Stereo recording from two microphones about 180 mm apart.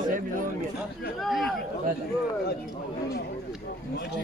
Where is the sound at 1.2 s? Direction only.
Centre (ahead or behind).